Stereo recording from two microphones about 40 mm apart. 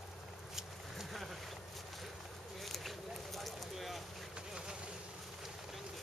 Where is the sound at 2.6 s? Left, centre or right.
Centre.